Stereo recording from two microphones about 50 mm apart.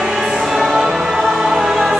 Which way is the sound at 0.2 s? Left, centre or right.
Centre.